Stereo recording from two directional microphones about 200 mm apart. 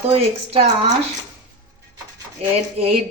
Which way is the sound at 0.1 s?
30° right (ahead or behind).